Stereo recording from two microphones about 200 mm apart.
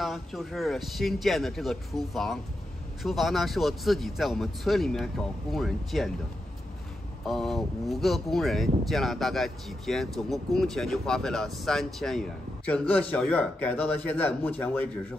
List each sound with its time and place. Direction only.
0.0 s speech: centre (ahead or behind)
7.2 s speech: centre (ahead or behind)